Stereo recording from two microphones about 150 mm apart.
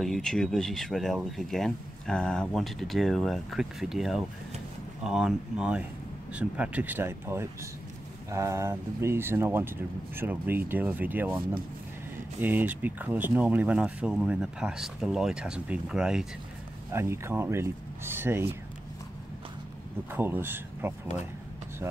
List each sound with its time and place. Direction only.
0.0 s speech: centre (ahead or behind)
16.9 s speech: 15° right (ahead or behind)
20.1 s speech: 15° right (ahead or behind)